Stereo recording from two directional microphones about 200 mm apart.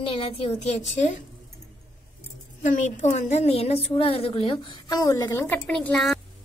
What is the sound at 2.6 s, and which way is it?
A woman's voice, 40° left (ahead or behind).